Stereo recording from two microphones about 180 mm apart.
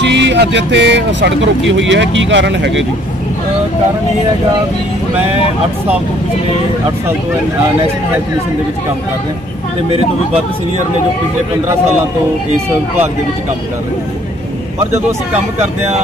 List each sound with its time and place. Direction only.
0.0 s speech: 75° right (ahead or behind)
1.7 s speech: 90° right